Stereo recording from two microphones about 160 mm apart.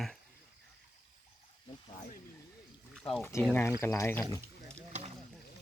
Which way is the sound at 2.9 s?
5° left (ahead or behind).